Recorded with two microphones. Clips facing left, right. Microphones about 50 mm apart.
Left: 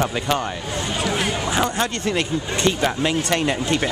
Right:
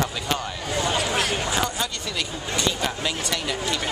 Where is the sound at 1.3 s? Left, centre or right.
Left.